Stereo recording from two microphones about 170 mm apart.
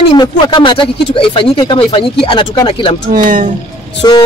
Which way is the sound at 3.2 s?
50° right (ahead or behind).